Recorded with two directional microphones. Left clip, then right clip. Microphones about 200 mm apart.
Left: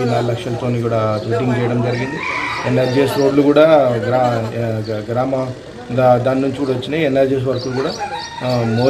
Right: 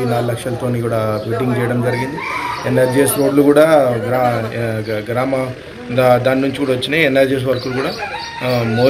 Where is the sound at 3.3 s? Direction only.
15° right (ahead or behind).